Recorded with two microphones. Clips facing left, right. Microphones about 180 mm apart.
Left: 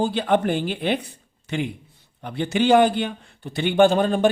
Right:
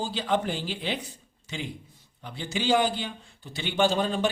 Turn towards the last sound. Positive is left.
turn(degrees=55)  # may be behind; listen again after turning